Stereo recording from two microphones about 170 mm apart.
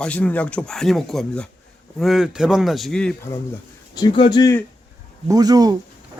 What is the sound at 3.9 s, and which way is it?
Speech, 30° left (ahead or behind).